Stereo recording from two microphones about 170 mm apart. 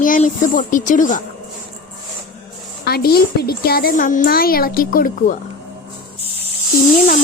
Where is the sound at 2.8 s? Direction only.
65° left (ahead or behind).